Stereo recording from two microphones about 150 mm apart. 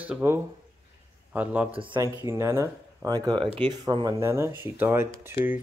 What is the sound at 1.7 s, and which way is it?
Speech, 35° right (ahead or behind).